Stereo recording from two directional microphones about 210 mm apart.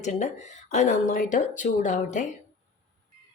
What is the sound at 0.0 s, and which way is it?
Speech, 35° left (ahead or behind).